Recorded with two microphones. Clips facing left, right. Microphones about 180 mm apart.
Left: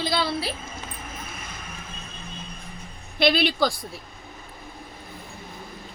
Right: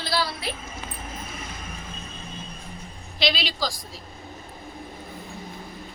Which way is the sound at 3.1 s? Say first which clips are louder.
Left 6 dB; 55° left (ahead or behind).